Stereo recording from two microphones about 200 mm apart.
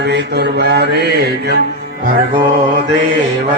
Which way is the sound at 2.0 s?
40° right (ahead or behind).